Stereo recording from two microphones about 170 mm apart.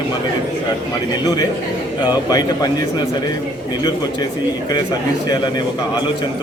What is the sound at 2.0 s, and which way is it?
Speech, 25° left (ahead or behind).